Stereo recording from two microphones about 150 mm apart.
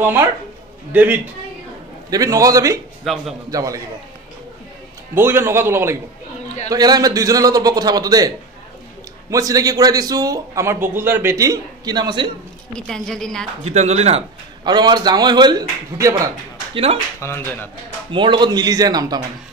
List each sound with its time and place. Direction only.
0.0 s a man's voice: 15° right (ahead or behind)
2.0 s a man's voice: 25° right (ahead or behind)
3.1 s a woman's voice: centre (ahead or behind)
3.4 s a man's voice: 25° right (ahead or behind)
5.1 s a man's voice: 15° right (ahead or behind)
9.3 s a man's voice: 25° right (ahead or behind)
12.7 s a woman's voice: 5° left (ahead or behind)
13.7 s speech: 45° right (ahead or behind)
14.6 s a man's voice: 30° right (ahead or behind)
16.7 s speech: 40° right (ahead or behind)
17.2 s speech: 15° left (ahead or behind)
18.1 s a man's voice: 35° right (ahead or behind)